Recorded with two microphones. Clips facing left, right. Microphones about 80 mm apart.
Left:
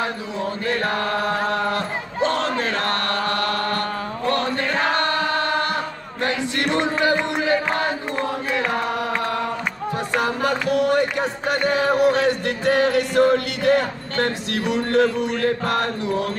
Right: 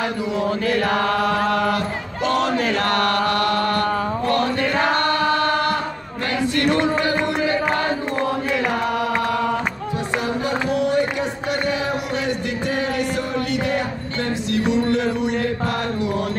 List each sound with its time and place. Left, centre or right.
2.2 s battle cry: left
2.7 s chant: left
6.2 s chant: left
10.2 s a sound: left
15.4 s chant: left